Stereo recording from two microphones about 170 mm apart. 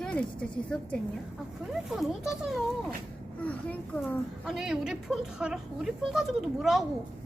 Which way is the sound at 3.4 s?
10° left (ahead or behind).